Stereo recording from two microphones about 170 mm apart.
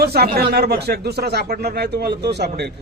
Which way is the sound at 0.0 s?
65° right (ahead or behind).